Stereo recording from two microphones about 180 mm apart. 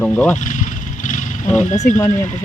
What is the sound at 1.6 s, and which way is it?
Speech, 45° left (ahead or behind).